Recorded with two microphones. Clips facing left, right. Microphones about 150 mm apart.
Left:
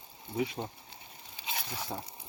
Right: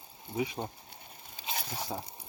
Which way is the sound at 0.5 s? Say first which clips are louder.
Right 1 dB; 50° right (ahead or behind).